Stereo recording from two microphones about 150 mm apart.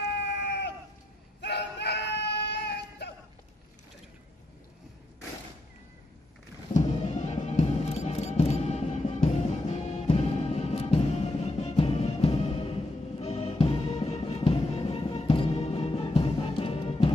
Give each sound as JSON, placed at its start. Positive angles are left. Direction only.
{"t": 1.8, "sound": "music", "side_deg": 90}
{"t": 6.7, "sound": "music", "side_deg": 50}